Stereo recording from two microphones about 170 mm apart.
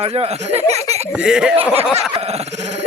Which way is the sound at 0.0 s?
35° right (ahead or behind).